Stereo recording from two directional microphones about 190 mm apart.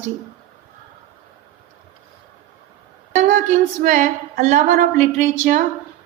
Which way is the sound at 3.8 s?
45° right (ahead or behind).